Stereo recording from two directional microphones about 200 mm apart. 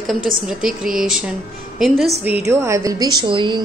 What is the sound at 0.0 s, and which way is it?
A woman's voice, centre (ahead or behind).